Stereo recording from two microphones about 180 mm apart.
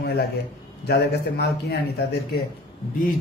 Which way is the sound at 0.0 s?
65° left (ahead or behind).